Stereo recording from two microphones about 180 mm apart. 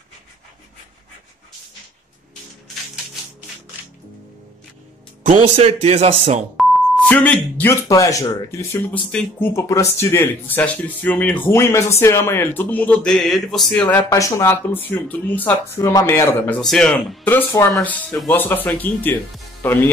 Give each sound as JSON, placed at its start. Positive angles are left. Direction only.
{"t": 5.2, "sound": "speech", "side_deg": -40}
{"t": 6.5, "sound": "beep", "side_deg": 0}
{"t": 7.9, "sound": "speech", "side_deg": 20}